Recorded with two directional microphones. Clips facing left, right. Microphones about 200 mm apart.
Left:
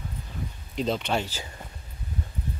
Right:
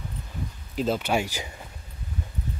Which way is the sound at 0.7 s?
5° right (ahead or behind).